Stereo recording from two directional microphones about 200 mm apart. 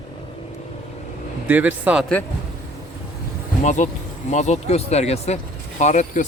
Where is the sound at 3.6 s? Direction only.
35° left (ahead or behind).